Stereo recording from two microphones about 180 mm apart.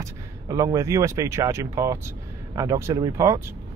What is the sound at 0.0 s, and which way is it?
Speech, 20° right (ahead or behind).